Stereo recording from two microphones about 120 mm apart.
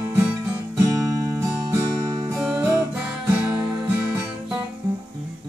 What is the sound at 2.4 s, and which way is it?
Music, 10° right (ahead or behind).